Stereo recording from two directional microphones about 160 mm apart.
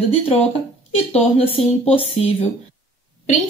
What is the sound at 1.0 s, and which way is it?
Speech, 35° left (ahead or behind).